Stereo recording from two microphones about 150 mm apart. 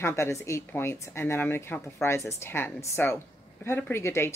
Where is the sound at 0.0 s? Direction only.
20° left (ahead or behind).